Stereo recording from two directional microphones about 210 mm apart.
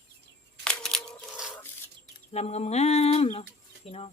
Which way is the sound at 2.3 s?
30° left (ahead or behind).